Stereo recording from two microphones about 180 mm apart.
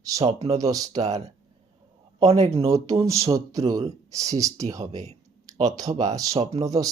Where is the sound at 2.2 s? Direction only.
35° right (ahead or behind).